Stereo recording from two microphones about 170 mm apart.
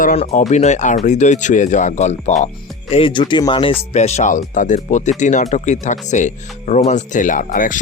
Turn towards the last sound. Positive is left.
turn(degrees=50)  # may be behind; listen again after turning